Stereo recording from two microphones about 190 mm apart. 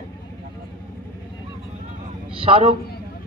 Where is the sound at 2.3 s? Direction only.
30° right (ahead or behind).